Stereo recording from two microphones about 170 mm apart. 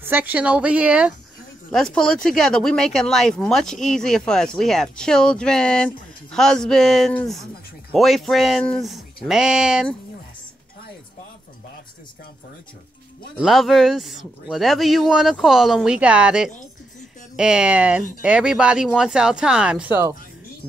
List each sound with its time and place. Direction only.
0.0 s speech: 10° right (ahead or behind)
1.7 s speech: 5° left (ahead or behind)
13.4 s speech: centre (ahead or behind)